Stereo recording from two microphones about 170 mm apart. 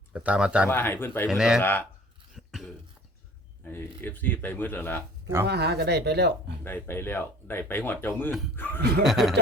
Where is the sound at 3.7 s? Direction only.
10° left (ahead or behind).